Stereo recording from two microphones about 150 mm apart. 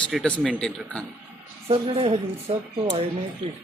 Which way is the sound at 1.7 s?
40° right (ahead or behind).